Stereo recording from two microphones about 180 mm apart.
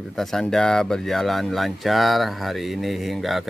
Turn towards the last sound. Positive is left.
turn(degrees=0)  # may be behind; listen again after turning